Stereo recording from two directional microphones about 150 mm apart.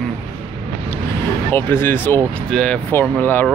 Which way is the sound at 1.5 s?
15° left (ahead or behind).